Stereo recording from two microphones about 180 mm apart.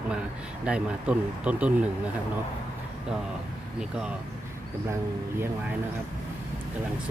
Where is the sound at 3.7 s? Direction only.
5° right (ahead or behind).